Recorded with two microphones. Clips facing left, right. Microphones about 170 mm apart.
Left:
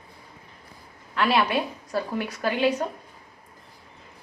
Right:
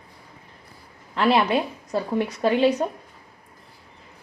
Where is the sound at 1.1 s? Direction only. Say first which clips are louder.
Right 3 dB; 25° right (ahead or behind).